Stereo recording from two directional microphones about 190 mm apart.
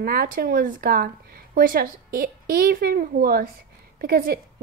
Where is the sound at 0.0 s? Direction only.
50° right (ahead or behind).